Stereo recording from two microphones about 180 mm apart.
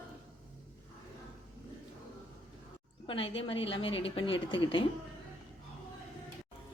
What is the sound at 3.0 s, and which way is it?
A woman's voice, 30° left (ahead or behind).